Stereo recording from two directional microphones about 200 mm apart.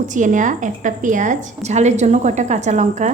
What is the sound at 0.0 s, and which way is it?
A woman's voice, 40° right (ahead or behind).